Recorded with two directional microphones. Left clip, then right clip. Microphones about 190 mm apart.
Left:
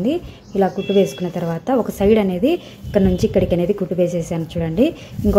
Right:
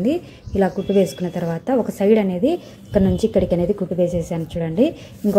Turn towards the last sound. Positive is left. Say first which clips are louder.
# left 2 dB
turn(degrees=0)  # may be behind; listen again after turning